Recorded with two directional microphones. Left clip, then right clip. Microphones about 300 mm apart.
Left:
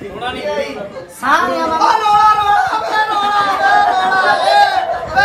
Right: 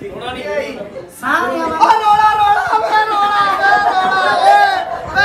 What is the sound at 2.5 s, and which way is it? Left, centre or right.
Chatter, right.